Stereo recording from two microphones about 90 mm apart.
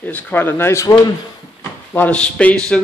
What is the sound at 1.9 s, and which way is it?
Speech, 15° left (ahead or behind).